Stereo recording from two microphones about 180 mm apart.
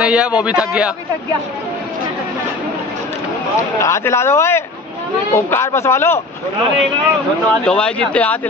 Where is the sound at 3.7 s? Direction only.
15° left (ahead or behind).